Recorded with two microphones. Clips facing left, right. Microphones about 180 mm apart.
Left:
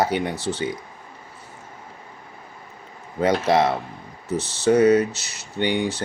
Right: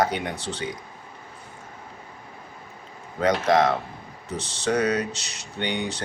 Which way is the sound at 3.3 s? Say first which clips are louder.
Left 1 dB; 10° left (ahead or behind).